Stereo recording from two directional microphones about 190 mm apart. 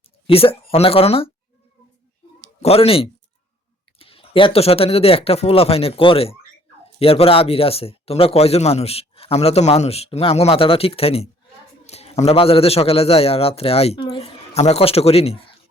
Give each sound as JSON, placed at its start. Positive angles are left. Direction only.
{"t": 0.3, "sound": "speech", "side_deg": 30}
{"t": 2.6, "sound": "speech", "side_deg": 30}